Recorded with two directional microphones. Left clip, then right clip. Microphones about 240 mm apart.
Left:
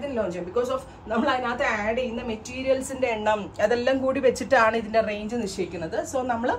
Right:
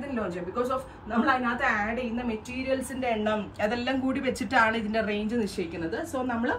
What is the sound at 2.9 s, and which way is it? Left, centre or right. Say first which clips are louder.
A woman's voice: left 4 dB; left.